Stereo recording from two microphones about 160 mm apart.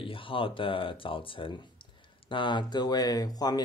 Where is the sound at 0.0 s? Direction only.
35° left (ahead or behind).